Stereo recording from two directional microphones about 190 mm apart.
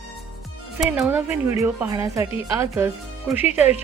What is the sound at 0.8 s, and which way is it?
A woman's voice, centre (ahead or behind).